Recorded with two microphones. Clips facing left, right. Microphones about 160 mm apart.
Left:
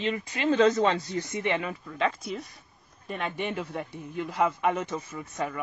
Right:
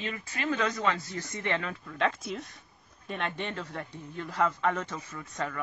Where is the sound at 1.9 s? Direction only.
Centre (ahead or behind).